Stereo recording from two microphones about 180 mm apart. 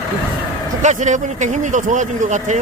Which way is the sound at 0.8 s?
45° right (ahead or behind).